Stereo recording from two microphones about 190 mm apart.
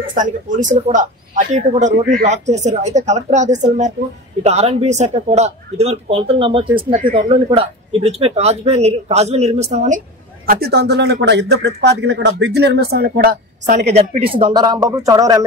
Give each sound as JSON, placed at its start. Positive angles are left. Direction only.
{"t": 0.1, "sound": "speech", "side_deg": -45}